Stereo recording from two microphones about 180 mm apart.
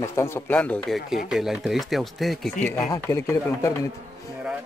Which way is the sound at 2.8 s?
20° left (ahead or behind).